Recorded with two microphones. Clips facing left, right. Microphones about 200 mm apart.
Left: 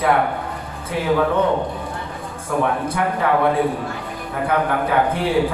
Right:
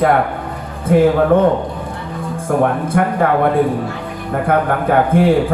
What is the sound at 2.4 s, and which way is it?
A man's voice, 50° right (ahead or behind).